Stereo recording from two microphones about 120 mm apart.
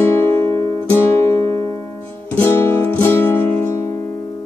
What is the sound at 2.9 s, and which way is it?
Music, 20° left (ahead or behind).